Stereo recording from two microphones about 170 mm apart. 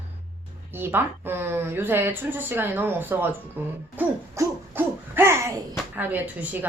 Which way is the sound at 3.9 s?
10° right (ahead or behind).